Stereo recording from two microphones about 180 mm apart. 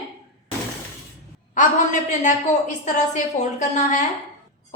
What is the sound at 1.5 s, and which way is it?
A woman's voice, 45° left (ahead or behind).